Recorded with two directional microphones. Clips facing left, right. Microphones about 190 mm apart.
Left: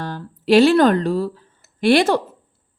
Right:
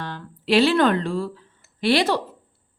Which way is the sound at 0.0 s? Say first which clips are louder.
Left 5 dB; 45° left (ahead or behind).